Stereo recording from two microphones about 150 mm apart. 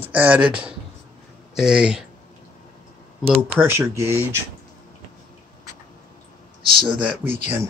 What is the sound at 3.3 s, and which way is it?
Speech, 10° right (ahead or behind).